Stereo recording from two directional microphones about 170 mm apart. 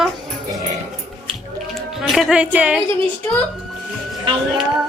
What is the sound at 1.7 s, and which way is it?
A woman's voice, centre (ahead or behind).